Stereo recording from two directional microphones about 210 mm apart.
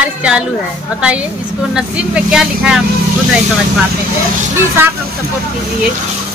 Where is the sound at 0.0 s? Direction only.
5° right (ahead or behind).